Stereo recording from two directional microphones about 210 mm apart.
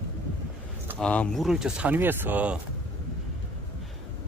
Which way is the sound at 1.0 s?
5° left (ahead or behind).